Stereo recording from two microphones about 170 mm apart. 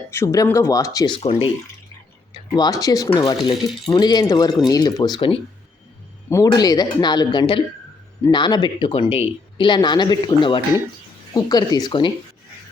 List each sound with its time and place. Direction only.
0.1 s speech: 15° left (ahead or behind)
1.2 s speech: 40° left (ahead or behind)
2.6 s speech: 20° left (ahead or behind)